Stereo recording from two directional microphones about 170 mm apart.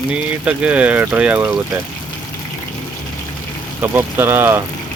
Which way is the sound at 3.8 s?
10° right (ahead or behind).